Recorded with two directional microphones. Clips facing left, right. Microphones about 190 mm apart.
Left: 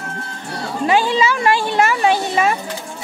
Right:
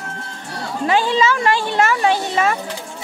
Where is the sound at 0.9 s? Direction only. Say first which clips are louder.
Even; 10° left (ahead or behind).